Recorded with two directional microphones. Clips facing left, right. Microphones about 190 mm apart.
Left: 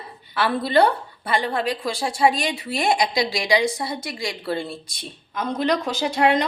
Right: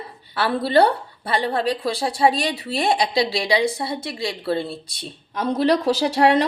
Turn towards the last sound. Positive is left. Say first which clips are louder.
# right 3 dB
turn(degrees=-35)  # may be behind; listen again after turning